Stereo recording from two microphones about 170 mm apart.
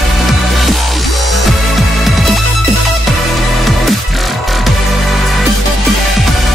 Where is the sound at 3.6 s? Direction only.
Centre (ahead or behind).